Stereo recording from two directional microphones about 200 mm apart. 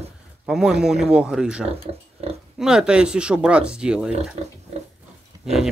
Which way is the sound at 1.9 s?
30° right (ahead or behind).